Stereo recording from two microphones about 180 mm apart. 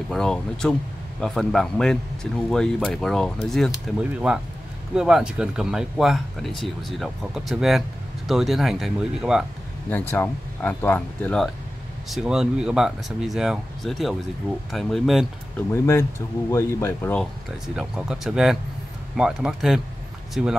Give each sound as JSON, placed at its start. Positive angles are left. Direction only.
{"t": 0.1, "sound": "speech", "side_deg": 5}
{"t": 9.8, "sound": "speech", "side_deg": 10}
{"t": 15.7, "sound": "speech", "side_deg": 15}
{"t": 17.7, "sound": "speech", "side_deg": -5}